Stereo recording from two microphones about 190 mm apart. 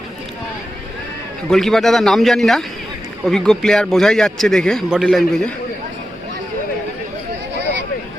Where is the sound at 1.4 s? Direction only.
Centre (ahead or behind).